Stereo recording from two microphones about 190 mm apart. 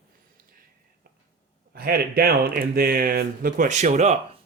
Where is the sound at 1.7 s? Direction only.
50° right (ahead or behind).